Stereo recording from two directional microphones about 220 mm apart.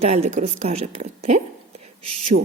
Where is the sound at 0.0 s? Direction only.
30° right (ahead or behind).